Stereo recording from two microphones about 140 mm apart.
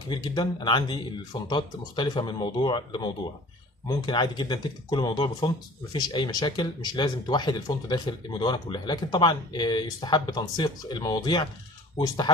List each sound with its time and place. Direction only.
0.1 s speech: 30° left (ahead or behind)